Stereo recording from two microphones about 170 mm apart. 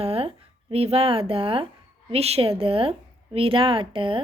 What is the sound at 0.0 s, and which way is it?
A woman's voice, 35° right (ahead or behind).